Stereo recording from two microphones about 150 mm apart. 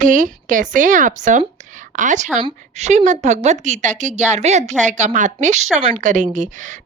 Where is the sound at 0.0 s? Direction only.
60° right (ahead or behind).